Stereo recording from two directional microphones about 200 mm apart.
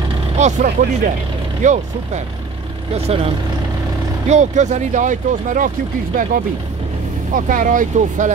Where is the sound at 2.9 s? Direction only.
30° right (ahead or behind).